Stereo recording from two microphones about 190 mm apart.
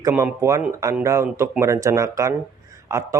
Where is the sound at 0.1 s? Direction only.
10° right (ahead or behind).